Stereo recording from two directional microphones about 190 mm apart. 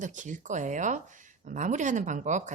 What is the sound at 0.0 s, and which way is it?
Speech, 40° right (ahead or behind).